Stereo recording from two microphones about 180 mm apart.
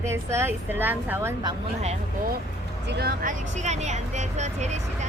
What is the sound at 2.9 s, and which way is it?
Speech, 60° right (ahead or behind).